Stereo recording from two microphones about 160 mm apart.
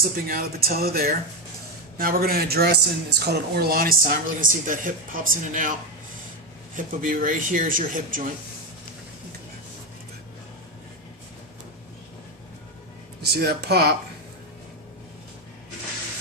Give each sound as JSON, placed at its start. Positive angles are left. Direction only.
{"t": 0.0, "sound": "a woman's voice", "side_deg": -70}
{"t": 6.7, "sound": "a woman's voice", "side_deg": -55}
{"t": 13.2, "sound": "speech", "side_deg": -85}